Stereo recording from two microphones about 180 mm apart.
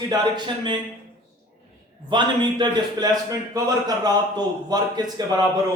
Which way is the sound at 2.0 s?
25° right (ahead or behind).